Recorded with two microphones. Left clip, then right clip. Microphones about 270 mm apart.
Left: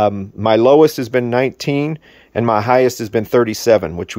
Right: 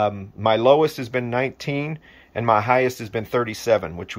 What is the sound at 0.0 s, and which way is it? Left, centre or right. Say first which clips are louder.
Speech: left 5 dB; left.